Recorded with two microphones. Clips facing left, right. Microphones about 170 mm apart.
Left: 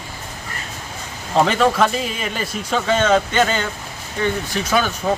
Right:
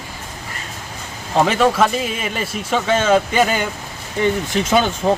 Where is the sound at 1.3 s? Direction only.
5° right (ahead or behind).